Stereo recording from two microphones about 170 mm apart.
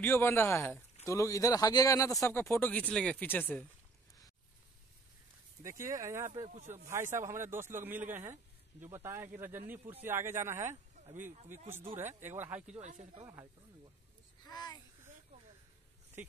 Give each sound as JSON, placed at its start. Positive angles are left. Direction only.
{"t": 0.0, "sound": "speech", "side_deg": 15}
{"t": 5.6, "sound": "a man's voice", "side_deg": -20}
{"t": 11.1, "sound": "speech", "side_deg": -50}
{"t": 12.2, "sound": "a man's voice", "side_deg": -10}
{"t": 12.6, "sound": "speech", "side_deg": -45}
{"t": 13.2, "sound": "speech", "side_deg": -20}
{"t": 14.4, "sound": "a child's voice", "side_deg": 25}
{"t": 16.2, "sound": "a man's voice", "side_deg": -10}